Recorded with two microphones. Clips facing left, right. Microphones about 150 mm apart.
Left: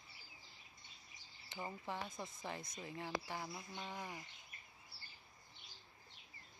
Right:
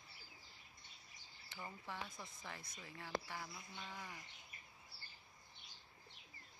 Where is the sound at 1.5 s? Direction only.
20° left (ahead or behind).